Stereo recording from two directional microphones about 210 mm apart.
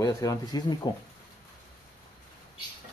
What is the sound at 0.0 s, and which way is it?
Speech, 15° left (ahead or behind).